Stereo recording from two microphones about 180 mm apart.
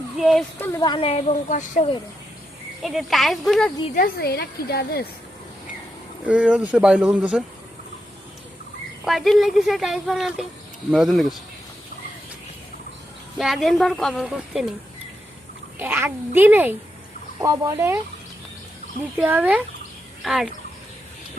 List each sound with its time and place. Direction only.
0.2 s speech: centre (ahead or behind)
0.6 s speech: 20° left (ahead or behind); by 1.9 s 40° left (ahead or behind)
2.8 s speech: centre (ahead or behind)
3.9 s a woman's voice: 55° left (ahead or behind)
6.2 s speech: 5° right (ahead or behind)
9.0 s speech: centre (ahead or behind)
13.4 s speech: centre (ahead or behind)
15.8 s a woman's voice: 10° right (ahead or behind)
19.2 s a woman's voice: 10° right (ahead or behind)